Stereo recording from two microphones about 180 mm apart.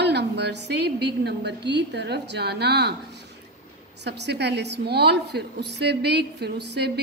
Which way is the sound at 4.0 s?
70° right (ahead or behind).